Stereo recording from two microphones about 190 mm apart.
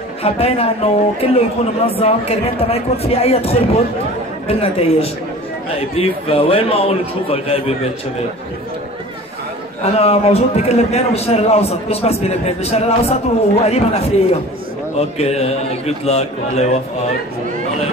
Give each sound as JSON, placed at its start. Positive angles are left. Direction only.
{"t": 0.2, "sound": "a man's voice", "side_deg": 30}
{"t": 9.8, "sound": "a man's voice", "side_deg": 30}